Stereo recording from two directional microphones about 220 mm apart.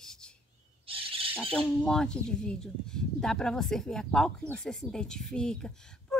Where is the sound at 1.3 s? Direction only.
5° left (ahead or behind).